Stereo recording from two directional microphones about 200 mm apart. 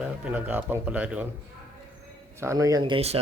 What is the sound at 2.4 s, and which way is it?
Speech, 15° right (ahead or behind).